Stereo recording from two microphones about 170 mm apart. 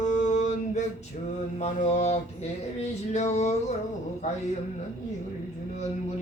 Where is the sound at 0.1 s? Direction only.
45° left (ahead or behind).